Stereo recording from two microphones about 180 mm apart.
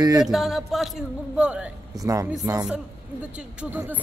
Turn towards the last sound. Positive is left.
turn(degrees=-10)  # may be behind; listen again after turning